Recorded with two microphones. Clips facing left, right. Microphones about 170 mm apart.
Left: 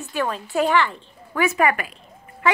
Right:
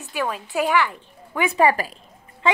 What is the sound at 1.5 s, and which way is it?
Speech, 30° right (ahead or behind).